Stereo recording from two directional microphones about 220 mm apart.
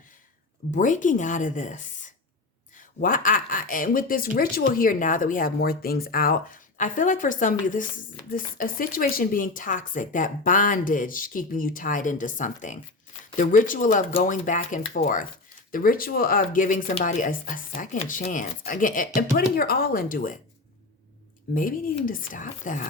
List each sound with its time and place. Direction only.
0.7 s speech: 35° left (ahead or behind)
21.5 s speech: 40° left (ahead or behind)